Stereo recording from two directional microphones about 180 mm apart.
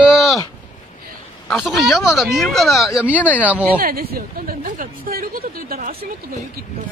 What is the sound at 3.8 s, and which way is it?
Speech, 55° right (ahead or behind).